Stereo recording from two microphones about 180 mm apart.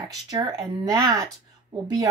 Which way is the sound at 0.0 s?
20° right (ahead or behind).